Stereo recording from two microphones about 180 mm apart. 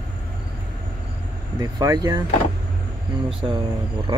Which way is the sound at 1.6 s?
20° right (ahead or behind).